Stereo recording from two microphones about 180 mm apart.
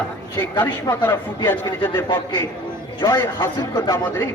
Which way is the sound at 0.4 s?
10° left (ahead or behind).